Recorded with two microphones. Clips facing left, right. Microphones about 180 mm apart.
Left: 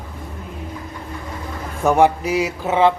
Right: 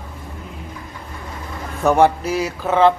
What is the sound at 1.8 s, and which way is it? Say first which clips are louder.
Speech: even; 10° left (ahead or behind).